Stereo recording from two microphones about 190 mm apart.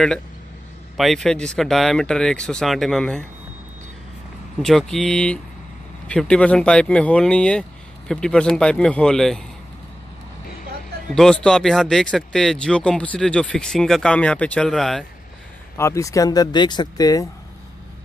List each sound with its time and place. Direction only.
0.9 s speech: centre (ahead or behind)
4.6 s speech: centre (ahead or behind)
11.1 s speech: 5° left (ahead or behind)
15.8 s speech: 15° left (ahead or behind)